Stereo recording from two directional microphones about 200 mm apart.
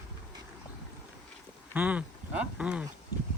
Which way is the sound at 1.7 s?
5° right (ahead or behind).